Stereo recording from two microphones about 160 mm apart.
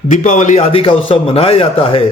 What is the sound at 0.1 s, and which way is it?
A man's voice, 50° left (ahead or behind).